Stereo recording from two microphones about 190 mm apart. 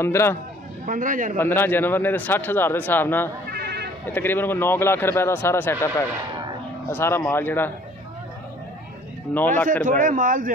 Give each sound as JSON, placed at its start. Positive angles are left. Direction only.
{"t": 0.0, "sound": "a man's voice", "side_deg": 15}
{"t": 0.8, "sound": "a man's voice", "side_deg": -45}
{"t": 1.4, "sound": "a man's voice", "side_deg": 10}
{"t": 3.4, "sound": "sheep", "side_deg": -55}
{"t": 4.1, "sound": "a man's voice", "side_deg": 10}
{"t": 9.3, "sound": "speech", "side_deg": 5}
{"t": 9.8, "sound": "a man's voice", "side_deg": -45}